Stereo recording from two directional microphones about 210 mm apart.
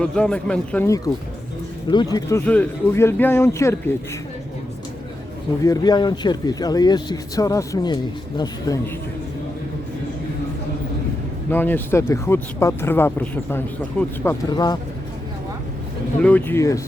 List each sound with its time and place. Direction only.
0.0 s a man's voice: 5° left (ahead or behind)
2.1 s speech: 10° left (ahead or behind)
5.6 s speech: 15° left (ahead or behind)
11.5 s speech: 10° left (ahead or behind)
16.2 s speech: 5° left (ahead or behind)